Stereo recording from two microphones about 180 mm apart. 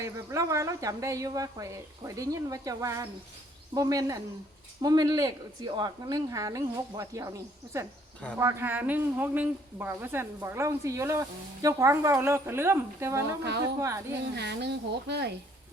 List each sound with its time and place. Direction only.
0.0 s a woman's voice: 15° right (ahead or behind)
14.3 s speech: 70° right (ahead or behind)